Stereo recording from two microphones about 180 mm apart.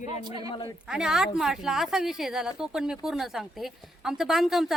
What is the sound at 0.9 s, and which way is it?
A woman's voice, 5° right (ahead or behind).